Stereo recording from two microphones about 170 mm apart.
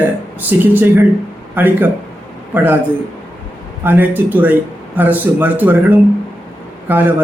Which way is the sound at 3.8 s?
10° right (ahead or behind).